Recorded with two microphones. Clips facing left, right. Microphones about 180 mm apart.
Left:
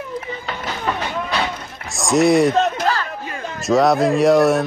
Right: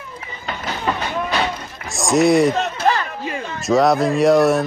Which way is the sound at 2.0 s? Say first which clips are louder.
Even; centre (ahead or behind).